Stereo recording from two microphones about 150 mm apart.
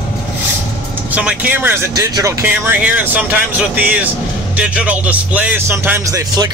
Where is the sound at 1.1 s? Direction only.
10° right (ahead or behind).